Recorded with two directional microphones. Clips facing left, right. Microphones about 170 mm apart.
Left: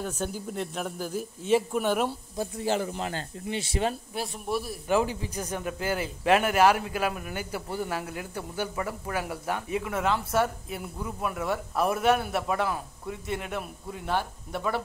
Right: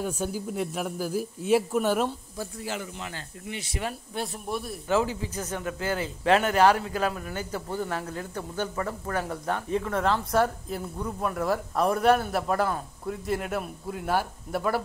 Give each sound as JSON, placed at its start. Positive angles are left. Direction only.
{"t": 0.0, "sound": "speech", "side_deg": -10}
{"t": 1.8, "sound": "a man's voice", "side_deg": 5}
{"t": 2.3, "sound": "speech", "side_deg": 25}
{"t": 4.1, "sound": "a man's voice", "side_deg": 5}
{"t": 4.8, "sound": "a man's voice", "side_deg": 15}